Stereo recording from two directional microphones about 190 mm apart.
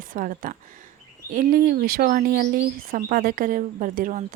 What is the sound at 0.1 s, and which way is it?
Speech, 45° right (ahead or behind).